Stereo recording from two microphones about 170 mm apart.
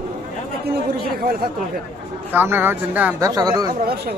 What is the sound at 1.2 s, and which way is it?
Speech, 60° right (ahead or behind).